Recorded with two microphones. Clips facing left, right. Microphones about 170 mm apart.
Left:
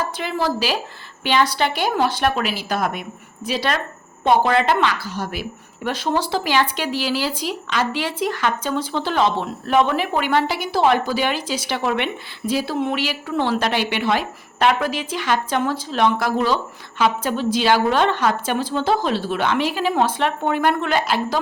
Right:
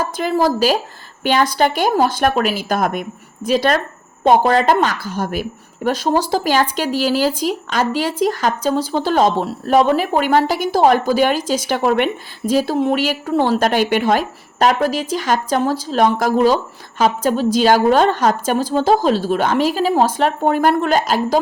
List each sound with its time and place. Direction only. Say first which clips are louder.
0.0 s a woman's voice: right 6 dB; 45° right (ahead or behind)